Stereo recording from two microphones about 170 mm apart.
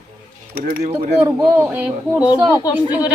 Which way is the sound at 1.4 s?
10° right (ahead or behind).